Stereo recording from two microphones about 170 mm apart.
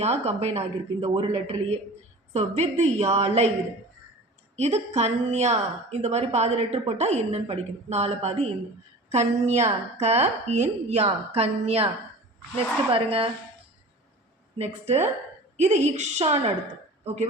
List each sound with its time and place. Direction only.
0.0 s a woman's voice: 40° right (ahead or behind)
4.5 s a woman's voice: 40° right (ahead or behind)
14.6 s a woman's voice: 40° right (ahead or behind)